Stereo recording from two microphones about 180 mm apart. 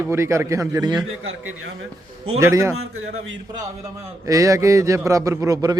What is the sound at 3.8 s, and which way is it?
A man's voice, 20° right (ahead or behind).